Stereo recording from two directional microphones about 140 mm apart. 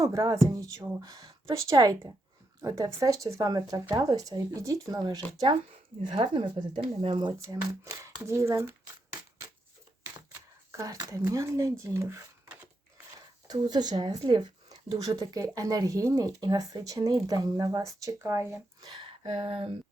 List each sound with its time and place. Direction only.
0.0 s a woman's voice: 25° right (ahead or behind)
10.0 s shuffling cards: 20° right (ahead or behind)
13.5 s a woman's voice: 30° right (ahead or behind)
18.8 s a sound: 35° right (ahead or behind)
19.2 s speech: 45° right (ahead or behind)